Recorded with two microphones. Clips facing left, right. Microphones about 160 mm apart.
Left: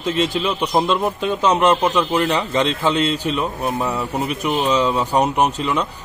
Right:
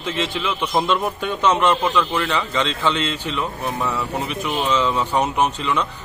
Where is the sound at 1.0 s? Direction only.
30° left (ahead or behind).